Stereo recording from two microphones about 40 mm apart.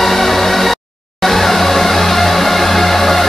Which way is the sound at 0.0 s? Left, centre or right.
Centre.